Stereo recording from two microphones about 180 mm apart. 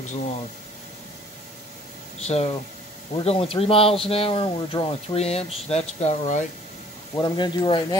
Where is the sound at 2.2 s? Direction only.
35° left (ahead or behind).